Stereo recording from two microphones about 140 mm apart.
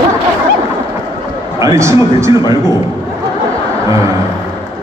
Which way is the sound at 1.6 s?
20° right (ahead or behind).